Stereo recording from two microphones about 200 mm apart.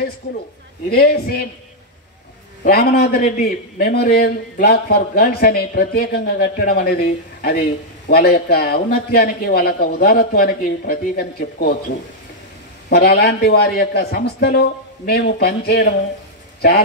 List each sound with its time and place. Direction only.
0.8 s a man's voice: 50° left (ahead or behind)
2.6 s a man's voice: 50° left (ahead or behind)
12.9 s a man's voice: 55° left (ahead or behind)